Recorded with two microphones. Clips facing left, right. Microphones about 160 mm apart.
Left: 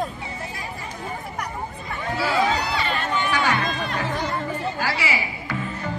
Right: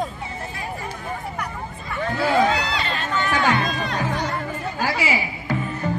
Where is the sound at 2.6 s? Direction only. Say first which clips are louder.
Left 1 dB; 15° left (ahead or behind).